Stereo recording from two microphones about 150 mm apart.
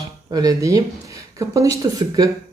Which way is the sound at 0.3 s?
25° right (ahead or behind).